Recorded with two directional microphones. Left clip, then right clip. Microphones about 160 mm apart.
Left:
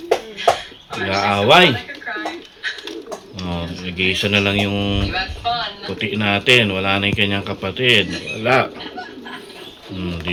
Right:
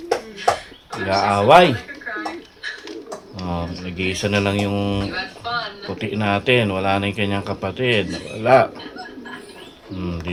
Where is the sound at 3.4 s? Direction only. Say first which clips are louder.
Even; 15° right (ahead or behind).